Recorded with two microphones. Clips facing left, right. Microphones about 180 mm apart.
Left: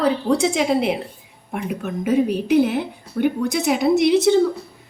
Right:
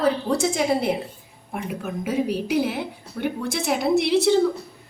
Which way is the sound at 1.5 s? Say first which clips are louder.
Left 3 dB; 5° right (ahead or behind).